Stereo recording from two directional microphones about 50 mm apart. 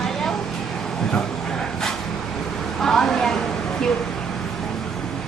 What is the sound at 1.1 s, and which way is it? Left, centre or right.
Vehicle, centre.